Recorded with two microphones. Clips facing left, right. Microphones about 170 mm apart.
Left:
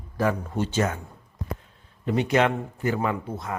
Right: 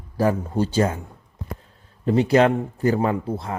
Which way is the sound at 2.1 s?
35° right (ahead or behind).